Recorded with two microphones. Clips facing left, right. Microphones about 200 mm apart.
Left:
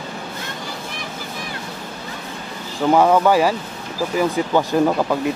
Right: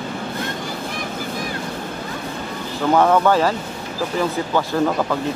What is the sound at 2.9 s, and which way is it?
Speech, 10° left (ahead or behind).